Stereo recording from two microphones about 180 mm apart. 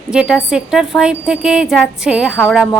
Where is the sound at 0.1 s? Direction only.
5° right (ahead or behind).